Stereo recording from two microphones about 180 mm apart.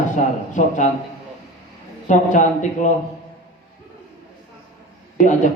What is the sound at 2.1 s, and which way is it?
Speech, 45° left (ahead or behind).